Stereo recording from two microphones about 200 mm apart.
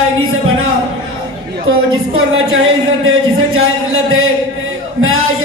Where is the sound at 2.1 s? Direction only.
90° right.